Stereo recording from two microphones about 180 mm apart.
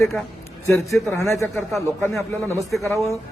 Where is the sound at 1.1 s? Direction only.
15° left (ahead or behind).